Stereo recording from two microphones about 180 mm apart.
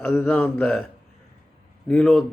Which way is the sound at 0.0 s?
5° left (ahead or behind).